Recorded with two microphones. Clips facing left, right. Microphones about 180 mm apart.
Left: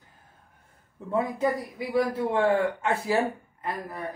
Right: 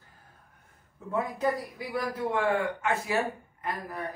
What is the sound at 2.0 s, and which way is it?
A man's voice, 30° left (ahead or behind).